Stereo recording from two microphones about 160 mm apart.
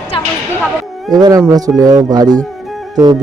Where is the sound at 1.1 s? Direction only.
20° right (ahead or behind).